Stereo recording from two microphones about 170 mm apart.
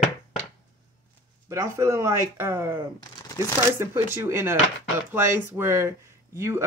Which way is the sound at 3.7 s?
15° right (ahead or behind).